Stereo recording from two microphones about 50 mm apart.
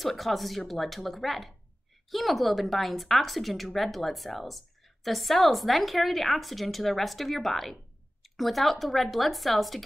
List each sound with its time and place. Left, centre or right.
0.0 s a woman's voice: centre